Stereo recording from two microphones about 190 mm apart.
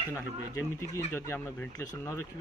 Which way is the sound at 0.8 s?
15° left (ahead or behind).